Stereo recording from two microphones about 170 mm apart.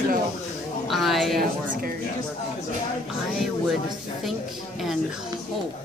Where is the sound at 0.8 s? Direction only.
Centre (ahead or behind).